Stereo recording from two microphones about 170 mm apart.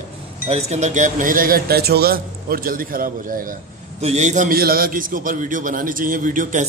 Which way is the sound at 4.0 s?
40° right (ahead or behind).